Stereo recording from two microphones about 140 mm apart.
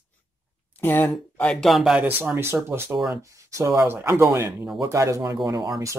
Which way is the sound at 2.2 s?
15° right (ahead or behind).